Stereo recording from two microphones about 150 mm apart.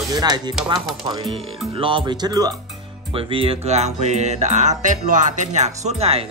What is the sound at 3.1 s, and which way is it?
Music, 40° right (ahead or behind).